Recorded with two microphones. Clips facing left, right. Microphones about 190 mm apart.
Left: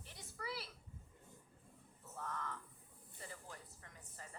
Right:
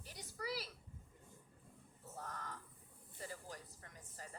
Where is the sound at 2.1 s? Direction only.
35° right (ahead or behind).